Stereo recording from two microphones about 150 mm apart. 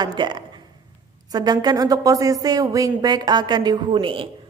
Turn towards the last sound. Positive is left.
turn(degrees=-35)  # may be behind; listen again after turning